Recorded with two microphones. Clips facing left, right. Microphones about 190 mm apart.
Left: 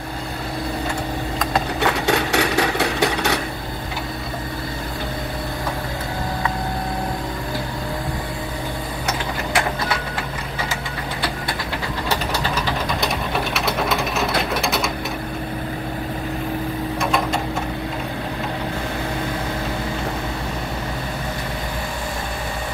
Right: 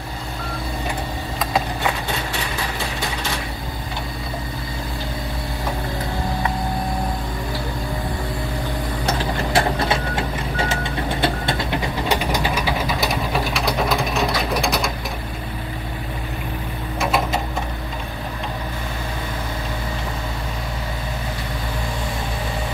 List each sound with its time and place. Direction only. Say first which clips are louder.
1.8 s sewing machine: left 5 dB; 75° left (ahead or behind)
9.0 s vehicle: right 3 dB; 30° right (ahead or behind); by 12.7 s 10° right (ahead or behind)
13.0 s sewing machine: right 1 dB; centre (ahead or behind)
17.0 s sewing machine: right 2 dB; 5° right (ahead or behind)